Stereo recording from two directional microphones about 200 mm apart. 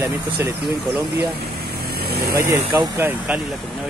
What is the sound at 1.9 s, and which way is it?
Vehicle, 50° right (ahead or behind).